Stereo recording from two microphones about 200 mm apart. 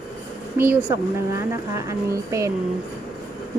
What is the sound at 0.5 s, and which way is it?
Speech, 10° right (ahead or behind).